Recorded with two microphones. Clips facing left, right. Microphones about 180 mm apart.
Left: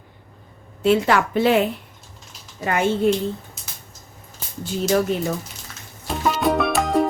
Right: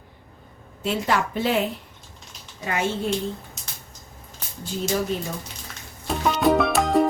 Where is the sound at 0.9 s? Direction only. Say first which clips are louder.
Left 6 dB; 70° left (ahead or behind).